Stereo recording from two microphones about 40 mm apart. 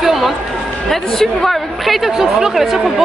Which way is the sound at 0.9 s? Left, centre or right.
Centre.